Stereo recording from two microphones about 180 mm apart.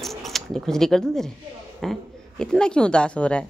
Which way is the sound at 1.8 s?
Centre (ahead or behind).